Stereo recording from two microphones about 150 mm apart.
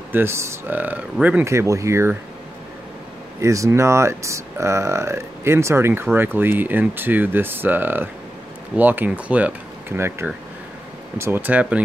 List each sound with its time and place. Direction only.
0.1 s speech: 15° right (ahead or behind)
3.3 s speech: 20° right (ahead or behind)